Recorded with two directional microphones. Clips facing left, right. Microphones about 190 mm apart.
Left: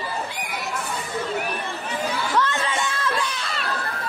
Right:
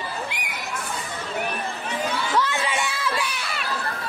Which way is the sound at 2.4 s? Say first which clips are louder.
Left 1 dB; 10° right (ahead or behind).